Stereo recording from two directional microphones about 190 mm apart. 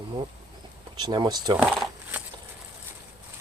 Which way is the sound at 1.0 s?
25° right (ahead or behind).